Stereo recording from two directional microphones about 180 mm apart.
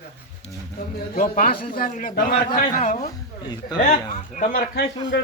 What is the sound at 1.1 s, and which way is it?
A man's voice, 50° left (ahead or behind).